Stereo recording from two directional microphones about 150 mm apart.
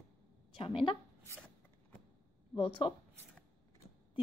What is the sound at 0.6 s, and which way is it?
Speech, 35° left (ahead or behind).